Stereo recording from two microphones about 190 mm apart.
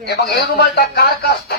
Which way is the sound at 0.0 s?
60° left (ahead or behind).